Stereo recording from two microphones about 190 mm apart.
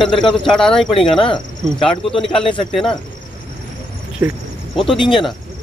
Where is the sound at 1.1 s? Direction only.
25° left (ahead or behind).